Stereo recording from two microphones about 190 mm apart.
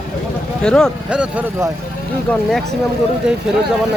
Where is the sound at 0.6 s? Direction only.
5° left (ahead or behind).